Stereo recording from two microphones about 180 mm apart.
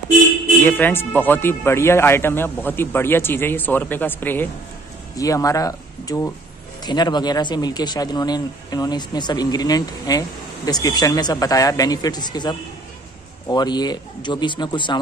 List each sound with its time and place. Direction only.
0.7 s speech: 10° left (ahead or behind)